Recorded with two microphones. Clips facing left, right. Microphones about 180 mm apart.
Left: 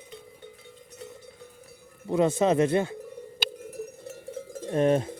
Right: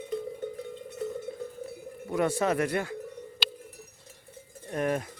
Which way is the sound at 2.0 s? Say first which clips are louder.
Left 4 dB; 25° left (ahead or behind).